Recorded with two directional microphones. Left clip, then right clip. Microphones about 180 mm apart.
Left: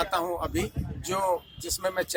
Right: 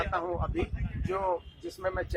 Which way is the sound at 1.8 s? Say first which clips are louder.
Left 4 dB; 15° left (ahead or behind).